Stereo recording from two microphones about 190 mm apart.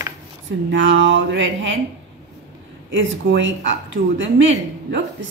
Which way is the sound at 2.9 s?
75° right (ahead or behind).